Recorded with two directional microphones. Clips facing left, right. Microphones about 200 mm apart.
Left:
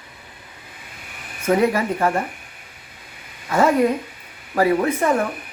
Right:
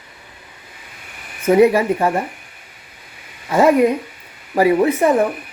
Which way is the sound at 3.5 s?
15° right (ahead or behind).